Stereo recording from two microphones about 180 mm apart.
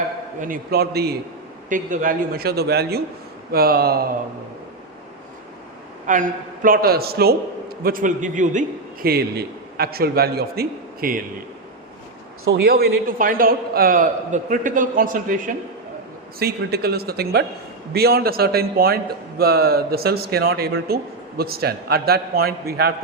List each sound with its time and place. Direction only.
0.4 s a man's voice: 55° right (ahead or behind)
1.7 s a man's voice: 45° right (ahead or behind)
6.1 s a man's voice: 45° right (ahead or behind)
12.5 s a man's voice: 60° right (ahead or behind)
16.4 s a man's voice: 60° right (ahead or behind)